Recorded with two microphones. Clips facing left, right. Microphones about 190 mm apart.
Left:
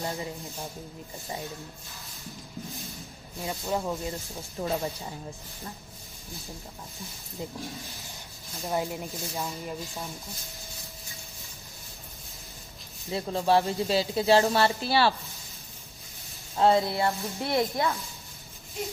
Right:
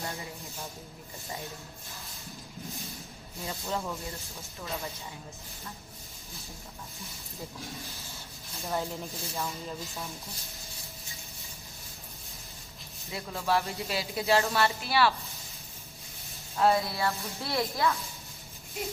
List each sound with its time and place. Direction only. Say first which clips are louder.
3.4 s speech: left 4 dB; 15° left (ahead or behind)
4.6 s speech: left 8 dB; 40° left (ahead or behind)
8.6 s speech: left 3 dB; 15° left (ahead or behind)
13.1 s speech: left 6 dB; 30° left (ahead or behind)
16.5 s speech: left 3 dB; 25° left (ahead or behind)